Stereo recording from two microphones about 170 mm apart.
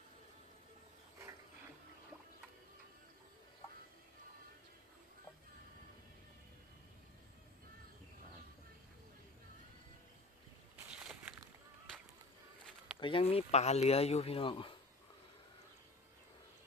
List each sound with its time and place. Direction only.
11.0 s walk: 5° right (ahead or behind)
13.0 s speech: 30° left (ahead or behind)